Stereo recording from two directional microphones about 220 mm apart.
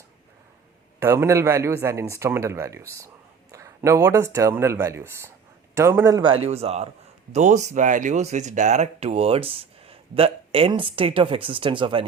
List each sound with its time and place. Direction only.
0.9 s speech: 15° right (ahead or behind)